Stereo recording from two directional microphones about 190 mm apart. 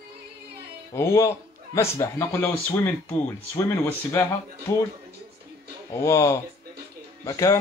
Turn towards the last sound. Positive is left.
turn(degrees=15)  # may be behind; listen again after turning